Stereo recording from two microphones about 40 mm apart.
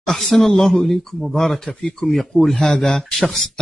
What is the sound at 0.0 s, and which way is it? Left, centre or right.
Speech, centre.